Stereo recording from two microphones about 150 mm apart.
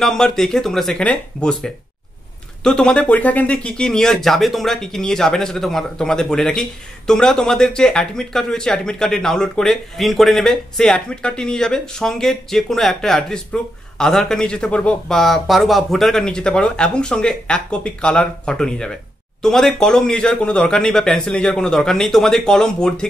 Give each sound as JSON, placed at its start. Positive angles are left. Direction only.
{"t": 0.0, "sound": "speech", "side_deg": 5}